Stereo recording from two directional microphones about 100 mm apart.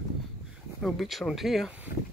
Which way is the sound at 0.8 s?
Centre (ahead or behind).